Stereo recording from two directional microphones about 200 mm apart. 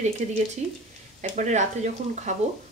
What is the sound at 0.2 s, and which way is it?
Speech, 35° right (ahead or behind).